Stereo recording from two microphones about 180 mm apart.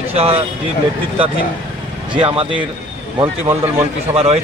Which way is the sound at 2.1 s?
30° right (ahead or behind).